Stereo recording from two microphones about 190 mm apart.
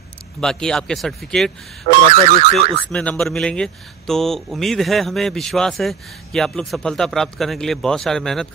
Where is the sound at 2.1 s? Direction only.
35° right (ahead or behind).